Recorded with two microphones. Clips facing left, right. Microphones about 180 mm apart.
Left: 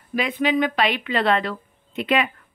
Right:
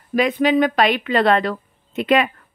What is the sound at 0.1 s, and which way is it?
A woman's voice, 45° right (ahead or behind).